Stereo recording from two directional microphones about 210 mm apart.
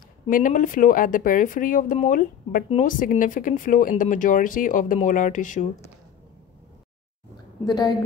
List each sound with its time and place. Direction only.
0.3 s speech: 40° left (ahead or behind)
7.6 s a woman's voice: 15° left (ahead or behind)